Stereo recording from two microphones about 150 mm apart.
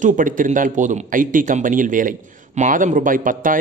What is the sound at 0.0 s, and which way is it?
A man's voice, 60° right (ahead or behind).